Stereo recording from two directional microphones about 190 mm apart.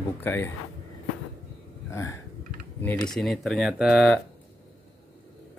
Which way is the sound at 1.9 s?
15° left (ahead or behind).